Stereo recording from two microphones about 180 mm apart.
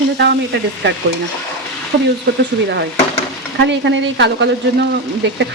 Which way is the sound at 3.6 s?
85° right.